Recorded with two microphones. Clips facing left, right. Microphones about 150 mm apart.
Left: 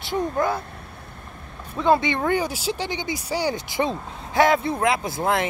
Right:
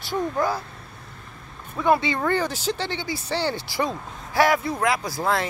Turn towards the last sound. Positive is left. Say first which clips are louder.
# left 2 dB
turn(degrees=20)  # may be behind; listen again after turning